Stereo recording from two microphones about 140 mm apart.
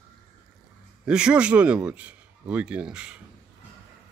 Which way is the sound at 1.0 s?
5° right (ahead or behind).